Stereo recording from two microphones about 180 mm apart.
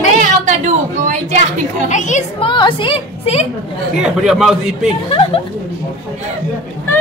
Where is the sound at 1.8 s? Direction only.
45° left (ahead or behind).